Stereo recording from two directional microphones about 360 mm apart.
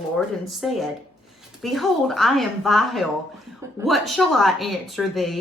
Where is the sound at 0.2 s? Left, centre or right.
Centre.